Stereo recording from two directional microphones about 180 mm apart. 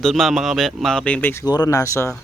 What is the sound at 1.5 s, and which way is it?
Speech, 20° left (ahead or behind).